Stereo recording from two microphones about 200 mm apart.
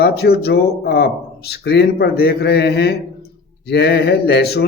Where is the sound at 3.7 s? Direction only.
55° left (ahead or behind).